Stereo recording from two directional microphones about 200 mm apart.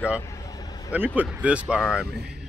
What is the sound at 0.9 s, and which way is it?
Speech, 10° right (ahead or behind).